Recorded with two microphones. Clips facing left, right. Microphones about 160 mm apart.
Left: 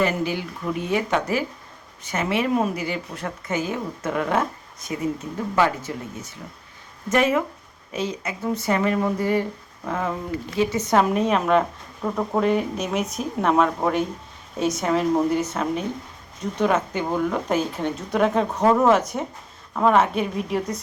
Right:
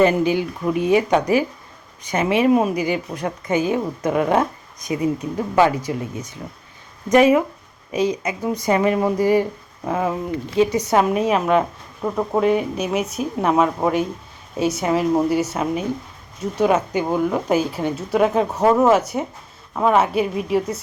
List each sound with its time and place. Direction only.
0.0 s a woman's voice: 20° right (ahead or behind)